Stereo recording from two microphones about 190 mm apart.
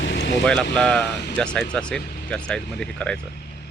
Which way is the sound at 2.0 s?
55° left (ahead or behind).